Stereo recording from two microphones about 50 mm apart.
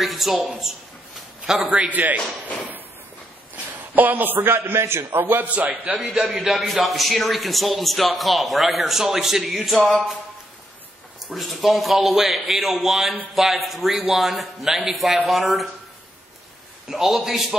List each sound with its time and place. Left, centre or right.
0.0 s a sound: centre
1.4 s a man's voice: centre
1.9 s a man's voice: right
3.5 s a man's voice: right
5.2 s a man's voice: right
6.1 s a man's voice: centre
11.2 s a man's voice: centre
16.9 s a man's voice: centre